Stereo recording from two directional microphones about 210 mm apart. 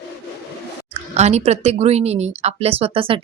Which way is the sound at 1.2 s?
30° right (ahead or behind).